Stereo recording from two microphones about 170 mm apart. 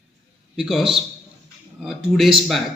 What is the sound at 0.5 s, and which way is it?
A man's voice, centre (ahead or behind).